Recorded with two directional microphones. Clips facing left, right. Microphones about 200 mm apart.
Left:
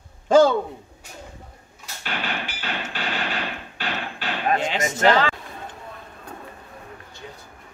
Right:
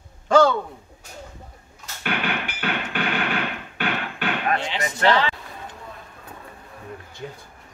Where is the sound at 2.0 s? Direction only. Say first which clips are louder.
Right 3 dB; 60° right (ahead or behind).